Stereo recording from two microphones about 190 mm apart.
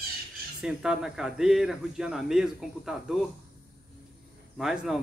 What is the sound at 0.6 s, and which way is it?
Speech, 5° right (ahead or behind).